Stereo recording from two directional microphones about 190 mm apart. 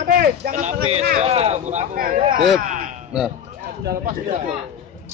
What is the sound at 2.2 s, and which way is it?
Speech, 25° right (ahead or behind).